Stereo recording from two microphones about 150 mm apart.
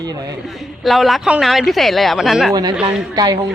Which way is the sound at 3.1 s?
25° right (ahead or behind).